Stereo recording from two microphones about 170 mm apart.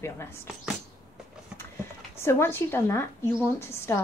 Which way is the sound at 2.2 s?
15° left (ahead or behind).